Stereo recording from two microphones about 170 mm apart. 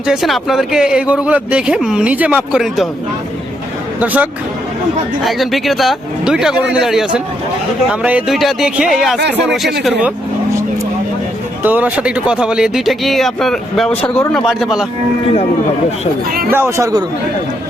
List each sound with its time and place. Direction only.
0.1 s speech: centre (ahead or behind)
4.0 s a man's voice: 10° right (ahead or behind)
11.6 s speech: 10° right (ahead or behind)
16.5 s a man's voice: 15° right (ahead or behind)